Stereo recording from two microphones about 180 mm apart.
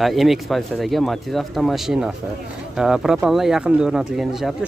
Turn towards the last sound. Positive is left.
turn(degrees=0)  # may be behind; listen again after turning